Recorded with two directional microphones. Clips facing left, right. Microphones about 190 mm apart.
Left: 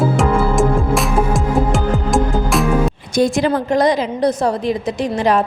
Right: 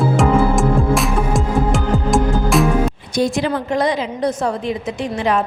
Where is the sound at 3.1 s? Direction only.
45° left (ahead or behind).